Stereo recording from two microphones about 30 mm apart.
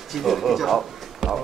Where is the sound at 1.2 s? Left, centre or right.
Right.